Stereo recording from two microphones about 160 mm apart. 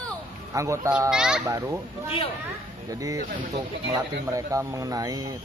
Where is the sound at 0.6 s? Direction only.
20° right (ahead or behind).